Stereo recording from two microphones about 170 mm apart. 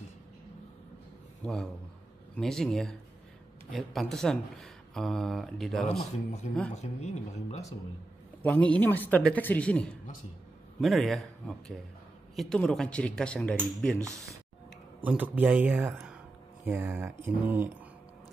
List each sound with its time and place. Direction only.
1.4 s a man's voice: 5° left (ahead or behind)
6.7 s speech: 40° left (ahead or behind)
8.4 s a man's voice: 10° left (ahead or behind)
14.0 s speech: 20° right (ahead or behind)